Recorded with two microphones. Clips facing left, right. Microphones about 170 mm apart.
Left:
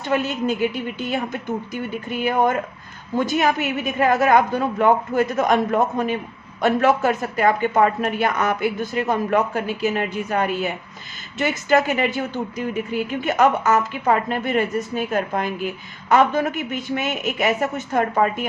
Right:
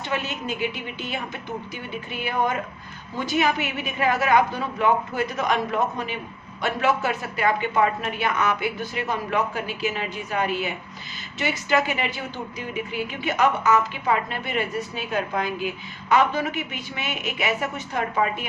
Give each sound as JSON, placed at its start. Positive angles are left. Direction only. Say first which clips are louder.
{"t": 0.0, "sound": "speech", "louder": "left 7 dB", "side_deg": 45}